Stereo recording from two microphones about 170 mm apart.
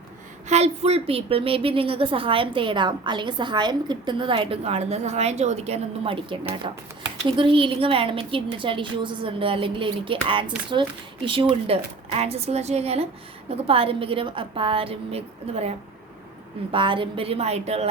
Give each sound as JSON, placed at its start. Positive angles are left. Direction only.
{"t": 0.4, "sound": "a woman's voice", "side_deg": -40}
{"t": 16.7, "sound": "a woman's voice", "side_deg": -30}